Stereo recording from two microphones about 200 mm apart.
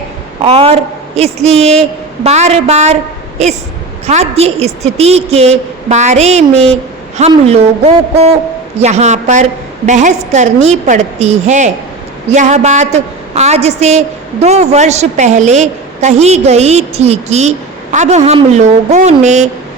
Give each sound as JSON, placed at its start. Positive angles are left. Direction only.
{"t": 0.4, "sound": "a woman's voice", "side_deg": -30}